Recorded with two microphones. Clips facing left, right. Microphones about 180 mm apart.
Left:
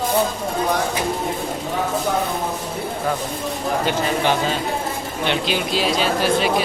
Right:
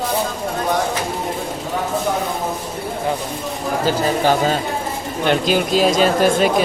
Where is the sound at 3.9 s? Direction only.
40° right (ahead or behind).